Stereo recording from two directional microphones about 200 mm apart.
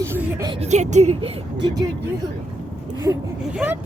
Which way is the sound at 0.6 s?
35° right (ahead or behind).